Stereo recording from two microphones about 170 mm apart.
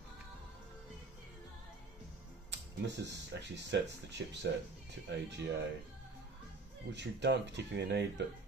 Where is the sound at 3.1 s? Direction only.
90° right.